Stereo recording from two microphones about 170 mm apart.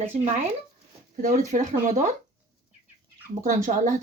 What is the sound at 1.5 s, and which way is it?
Speech, 45° right (ahead or behind).